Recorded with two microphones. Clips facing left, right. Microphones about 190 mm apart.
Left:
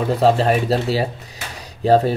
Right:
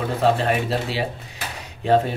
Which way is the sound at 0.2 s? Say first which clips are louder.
Left 3 dB; 35° left (ahead or behind).